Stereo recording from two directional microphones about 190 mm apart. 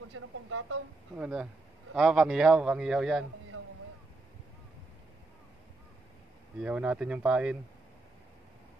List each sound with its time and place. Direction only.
0.1 s speech: 90° right
1.1 s a man's voice: 5° right (ahead or behind)
3.5 s boat: 90° right
6.6 s a man's voice: 5° right (ahead or behind)